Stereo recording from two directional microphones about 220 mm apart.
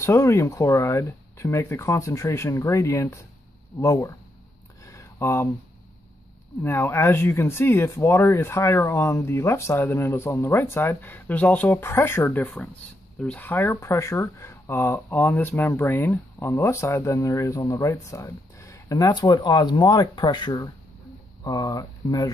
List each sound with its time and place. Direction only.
0.0 s speech: 10° left (ahead or behind)
4.8 s a sound: 10° left (ahead or behind)
6.6 s speech: 10° left (ahead or behind)